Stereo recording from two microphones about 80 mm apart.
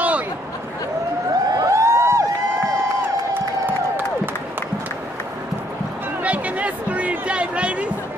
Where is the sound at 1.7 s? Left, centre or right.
Right.